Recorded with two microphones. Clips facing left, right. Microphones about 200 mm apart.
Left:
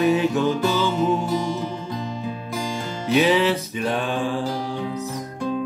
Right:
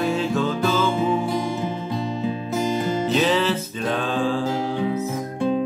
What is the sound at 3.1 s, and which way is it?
Music, 15° left (ahead or behind).